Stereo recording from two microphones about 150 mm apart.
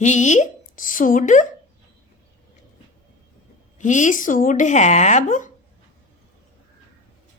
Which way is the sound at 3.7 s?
55° left (ahead or behind).